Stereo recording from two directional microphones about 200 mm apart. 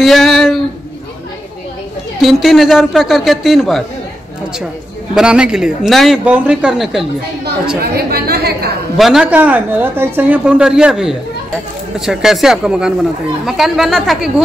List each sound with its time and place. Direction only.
0.0 s speech: centre (ahead or behind)
2.2 s speech: centre (ahead or behind)
5.1 s speech: 5° right (ahead or behind)
7.8 s a woman's voice: 50° right (ahead or behind)
8.9 s speech: centre (ahead or behind)